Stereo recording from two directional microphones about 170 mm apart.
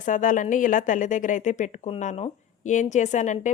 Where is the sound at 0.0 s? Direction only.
50° left (ahead or behind).